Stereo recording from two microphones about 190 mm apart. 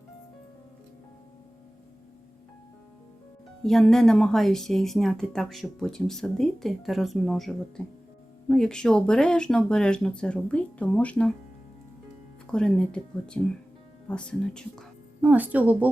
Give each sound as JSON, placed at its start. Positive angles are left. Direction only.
{"t": 3.6, "sound": "speech", "side_deg": 5}
{"t": 12.5, "sound": "speech", "side_deg": 5}
{"t": 15.2, "sound": "speech", "side_deg": -10}